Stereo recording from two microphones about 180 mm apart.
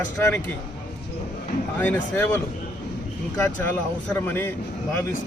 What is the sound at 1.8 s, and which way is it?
Speech, 10° left (ahead or behind).